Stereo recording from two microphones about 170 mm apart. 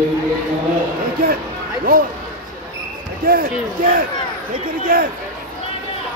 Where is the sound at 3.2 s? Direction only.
55° right (ahead or behind).